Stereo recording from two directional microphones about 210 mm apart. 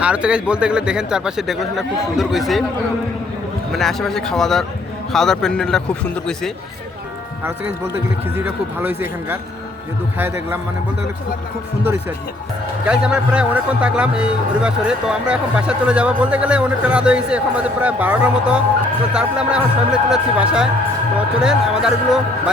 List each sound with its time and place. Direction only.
0.0 s a man's voice: 5° right (ahead or behind)
3.7 s a man's voice: centre (ahead or behind)
8.4 s speech: 10° right (ahead or behind)
12.9 s a man's voice: 5° right (ahead or behind)